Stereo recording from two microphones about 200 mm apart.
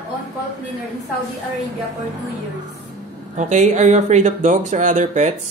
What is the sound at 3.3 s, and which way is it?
Speech, 35° right (ahead or behind).